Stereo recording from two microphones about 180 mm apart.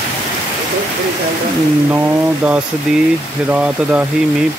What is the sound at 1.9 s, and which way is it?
Speech, 10° right (ahead or behind).